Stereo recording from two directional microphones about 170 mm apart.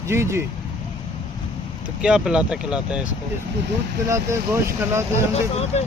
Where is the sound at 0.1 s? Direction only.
15° right (ahead or behind).